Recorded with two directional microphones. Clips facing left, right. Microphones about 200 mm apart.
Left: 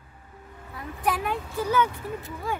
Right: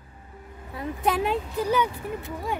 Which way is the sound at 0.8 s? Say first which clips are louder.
Right 3 dB; 25° right (ahead or behind).